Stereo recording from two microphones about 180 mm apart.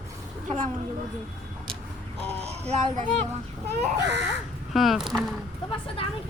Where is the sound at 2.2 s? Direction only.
35° right (ahead or behind).